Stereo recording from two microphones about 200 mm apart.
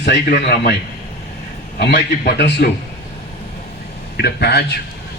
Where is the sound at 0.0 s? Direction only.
55° left (ahead or behind).